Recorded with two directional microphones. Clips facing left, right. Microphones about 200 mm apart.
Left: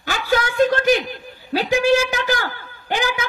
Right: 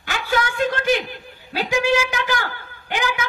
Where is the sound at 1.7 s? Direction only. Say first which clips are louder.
Left 3 dB; 35° left (ahead or behind).